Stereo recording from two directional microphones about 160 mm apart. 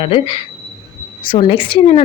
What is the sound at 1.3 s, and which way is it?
Speech, 30° left (ahead or behind).